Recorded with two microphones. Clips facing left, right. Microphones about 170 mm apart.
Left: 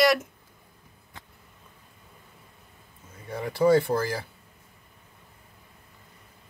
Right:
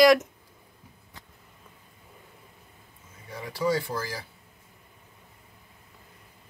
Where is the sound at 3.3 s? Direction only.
55° left (ahead or behind).